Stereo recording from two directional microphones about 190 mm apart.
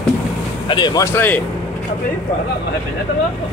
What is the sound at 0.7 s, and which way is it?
Speech, 25° left (ahead or behind).